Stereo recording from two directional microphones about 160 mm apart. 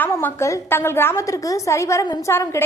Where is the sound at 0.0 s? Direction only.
15° left (ahead or behind).